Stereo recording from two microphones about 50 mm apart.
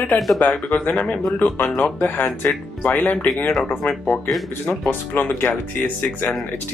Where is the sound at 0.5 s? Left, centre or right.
Left.